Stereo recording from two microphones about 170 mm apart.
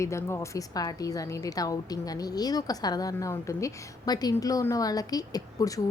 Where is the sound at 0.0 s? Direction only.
15° left (ahead or behind).